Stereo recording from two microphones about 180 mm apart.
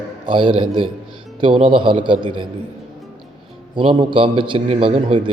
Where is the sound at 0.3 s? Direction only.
30° right (ahead or behind).